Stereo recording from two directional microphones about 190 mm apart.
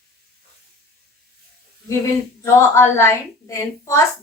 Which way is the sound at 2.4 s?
15° left (ahead or behind).